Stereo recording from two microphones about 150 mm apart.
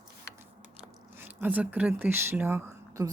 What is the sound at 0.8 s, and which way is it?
Speech, 15° right (ahead or behind).